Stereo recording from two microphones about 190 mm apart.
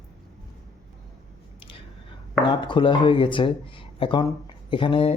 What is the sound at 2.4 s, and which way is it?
Speech, 25° left (ahead or behind).